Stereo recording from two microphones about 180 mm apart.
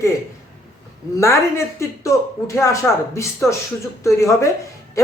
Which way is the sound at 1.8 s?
15° left (ahead or behind).